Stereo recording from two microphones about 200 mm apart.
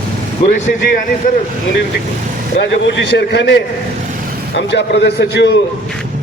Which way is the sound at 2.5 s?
60° left (ahead or behind).